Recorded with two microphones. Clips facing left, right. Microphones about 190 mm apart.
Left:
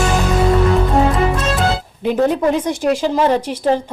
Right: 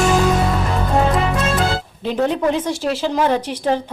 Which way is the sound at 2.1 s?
10° left (ahead or behind).